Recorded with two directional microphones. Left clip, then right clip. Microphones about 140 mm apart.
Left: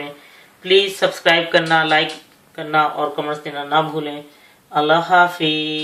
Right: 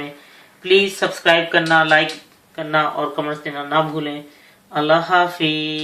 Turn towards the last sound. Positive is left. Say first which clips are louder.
# left 1 dB
turn(degrees=-30)  # may be behind; listen again after turning